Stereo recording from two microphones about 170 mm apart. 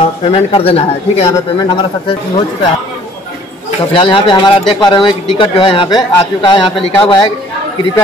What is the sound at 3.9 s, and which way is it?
Speech, 30° left (ahead or behind).